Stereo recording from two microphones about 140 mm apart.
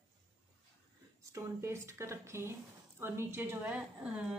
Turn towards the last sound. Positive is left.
turn(degrees=-10)  # may be behind; listen again after turning